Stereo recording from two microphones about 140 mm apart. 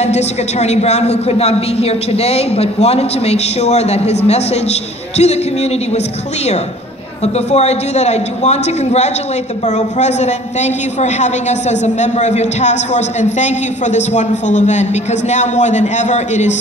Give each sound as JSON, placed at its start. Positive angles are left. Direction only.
{"t": 0.0, "sound": "a man's voice", "side_deg": 50}
{"t": 7.3, "sound": "a man's voice", "side_deg": 50}